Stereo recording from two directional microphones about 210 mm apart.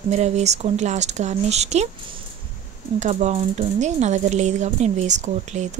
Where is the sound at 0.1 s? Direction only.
30° right (ahead or behind).